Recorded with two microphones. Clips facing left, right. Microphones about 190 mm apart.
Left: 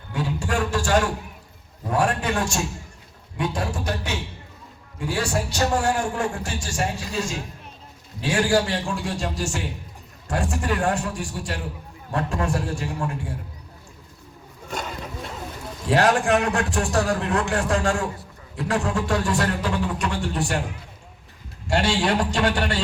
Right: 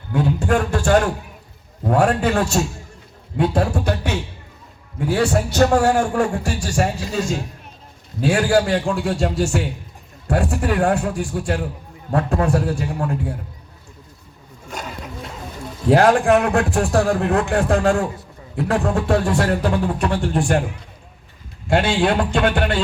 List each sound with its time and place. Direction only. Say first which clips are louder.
0.1 s a sound: right 7 dB; 60° right (ahead or behind)
1.8 s a man's voice: right 6 dB; 60° right (ahead or behind)
15.9 s a man's voice: right 5 dB; 55° right (ahead or behind)
21.7 s a man's voice: right 4 dB; 55° right (ahead or behind)